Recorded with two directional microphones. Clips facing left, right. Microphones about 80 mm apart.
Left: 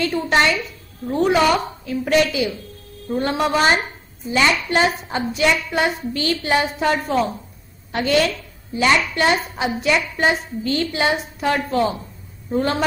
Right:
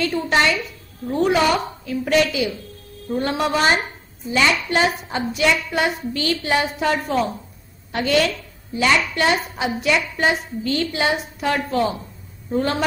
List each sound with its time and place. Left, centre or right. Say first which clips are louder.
0.0 s a woman's voice: left 1 dB; left
1.9 s a woman's voice: left 1 dB; left